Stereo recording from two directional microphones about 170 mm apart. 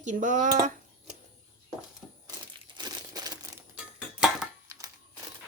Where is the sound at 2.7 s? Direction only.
25° right (ahead or behind).